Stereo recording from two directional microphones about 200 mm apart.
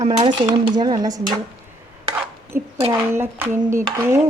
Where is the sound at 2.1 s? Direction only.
10° right (ahead or behind).